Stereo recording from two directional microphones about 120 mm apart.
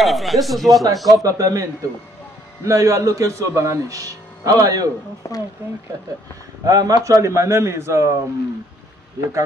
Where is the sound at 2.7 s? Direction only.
25° right (ahead or behind).